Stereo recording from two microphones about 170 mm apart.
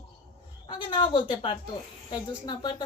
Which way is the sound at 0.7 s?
30° left (ahead or behind).